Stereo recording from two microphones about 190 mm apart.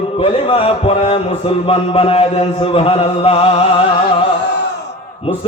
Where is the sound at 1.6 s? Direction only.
30° left (ahead or behind).